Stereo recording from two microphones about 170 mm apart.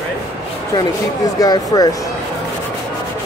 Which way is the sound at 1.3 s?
20° left (ahead or behind).